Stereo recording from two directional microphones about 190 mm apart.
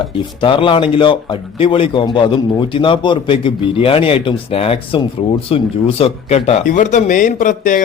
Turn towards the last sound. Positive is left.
turn(degrees=45)  # may be behind; listen again after turning